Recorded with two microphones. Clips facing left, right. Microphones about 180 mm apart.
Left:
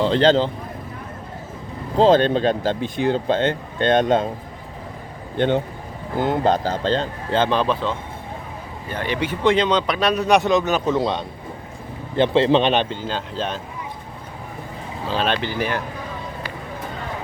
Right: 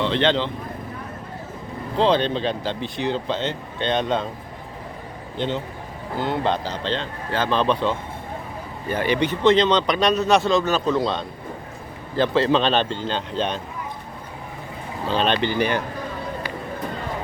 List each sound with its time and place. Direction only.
0.0 s speech: 40° left (ahead or behind)
2.0 s speech: 45° left (ahead or behind)
5.4 s a man's voice: 55° left (ahead or behind)
6.1 s speech: 45° left (ahead or behind)
7.5 s speech: 5° left (ahead or behind)
9.0 s speech: centre (ahead or behind)
15.0 s speech: 5° left (ahead or behind)